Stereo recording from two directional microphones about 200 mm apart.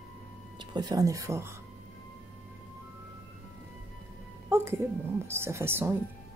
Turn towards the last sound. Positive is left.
turn(degrees=-10)  # may be behind; listen again after turning